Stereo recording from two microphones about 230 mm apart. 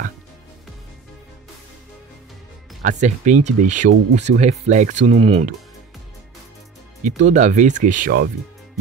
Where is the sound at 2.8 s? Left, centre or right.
Right.